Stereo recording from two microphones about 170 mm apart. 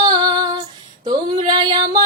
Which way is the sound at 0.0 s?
25° right (ahead or behind).